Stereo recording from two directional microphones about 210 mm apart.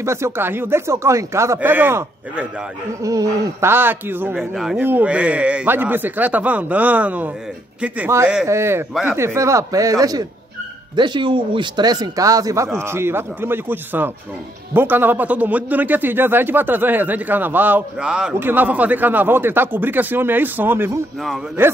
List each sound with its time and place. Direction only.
0.0 s a man's voice: 15° right (ahead or behind)